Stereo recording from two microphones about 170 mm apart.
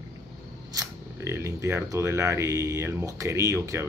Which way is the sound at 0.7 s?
20° right (ahead or behind).